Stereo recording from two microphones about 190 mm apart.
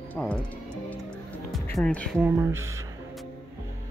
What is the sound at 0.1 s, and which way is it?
Speech, 5° left (ahead or behind).